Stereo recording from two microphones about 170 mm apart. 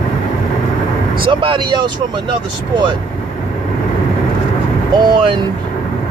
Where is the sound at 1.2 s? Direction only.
30° right (ahead or behind).